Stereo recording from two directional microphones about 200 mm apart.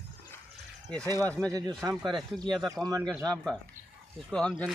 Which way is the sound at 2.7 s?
20° right (ahead or behind).